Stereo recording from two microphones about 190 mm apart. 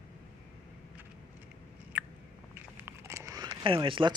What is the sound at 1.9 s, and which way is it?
Biting, 10° right (ahead or behind).